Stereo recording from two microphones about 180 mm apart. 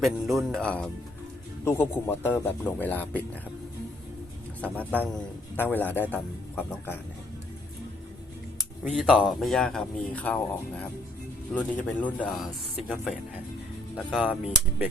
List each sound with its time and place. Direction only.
0.0 s a man's voice: centre (ahead or behind)
4.6 s a man's voice: 10° left (ahead or behind)
8.9 s speech: 5° left (ahead or behind)
11.5 s a man's voice: 10° left (ahead or behind)
14.0 s speech: 5° left (ahead or behind)